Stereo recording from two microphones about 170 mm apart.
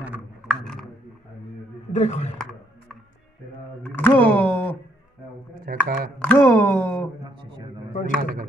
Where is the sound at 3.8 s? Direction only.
10° left (ahead or behind).